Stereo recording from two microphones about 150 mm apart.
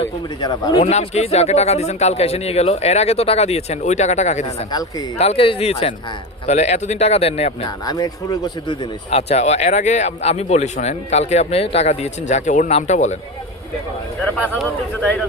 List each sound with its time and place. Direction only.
0.0 s a man's voice: 30° left (ahead or behind)
0.9 s speech: 45° left (ahead or behind)
4.4 s speech: 25° left (ahead or behind)
5.1 s speech: 45° left (ahead or behind)
7.9 s speech: 25° left (ahead or behind)
9.1 s speech: 45° left (ahead or behind)